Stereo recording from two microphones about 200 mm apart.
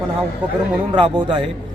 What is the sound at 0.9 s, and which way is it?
Speech, 25° right (ahead or behind).